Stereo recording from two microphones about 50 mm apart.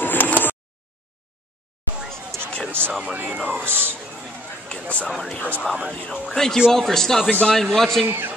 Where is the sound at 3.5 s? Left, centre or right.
Right.